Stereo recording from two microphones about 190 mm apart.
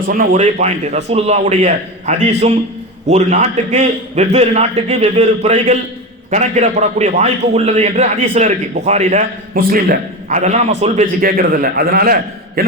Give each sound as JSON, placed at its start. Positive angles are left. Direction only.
{"t": 0.0, "sound": "a man's voice", "side_deg": -50}
{"t": 0.6, "sound": "a man's voice", "side_deg": -35}
{"t": 9.6, "sound": "a man's voice", "side_deg": -50}
{"t": 10.3, "sound": "a man's voice", "side_deg": -35}
{"t": 11.2, "sound": "a man's voice", "side_deg": -50}